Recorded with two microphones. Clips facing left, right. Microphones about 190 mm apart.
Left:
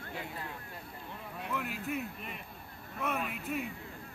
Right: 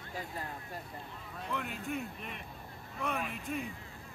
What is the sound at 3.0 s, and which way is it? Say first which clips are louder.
Vehicle: left 1 dB; centre (ahead or behind).